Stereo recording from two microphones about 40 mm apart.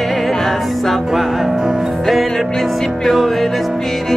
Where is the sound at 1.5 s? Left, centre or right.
Centre.